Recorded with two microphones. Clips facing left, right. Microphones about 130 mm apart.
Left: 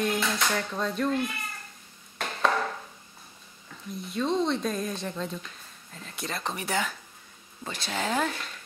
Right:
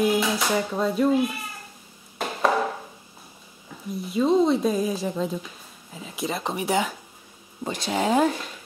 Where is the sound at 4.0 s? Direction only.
5° right (ahead or behind).